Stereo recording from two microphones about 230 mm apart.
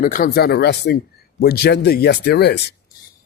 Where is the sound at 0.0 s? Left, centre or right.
Left.